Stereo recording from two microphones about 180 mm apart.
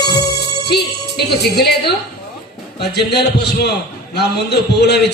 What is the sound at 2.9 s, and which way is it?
A man's voice, 65° left (ahead or behind).